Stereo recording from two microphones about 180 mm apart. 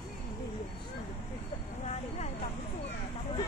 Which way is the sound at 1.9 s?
40° left (ahead or behind).